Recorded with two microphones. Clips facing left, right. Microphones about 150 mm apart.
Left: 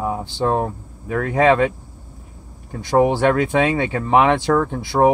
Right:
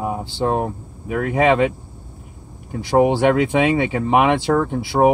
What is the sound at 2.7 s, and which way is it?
Speech, 15° right (ahead or behind).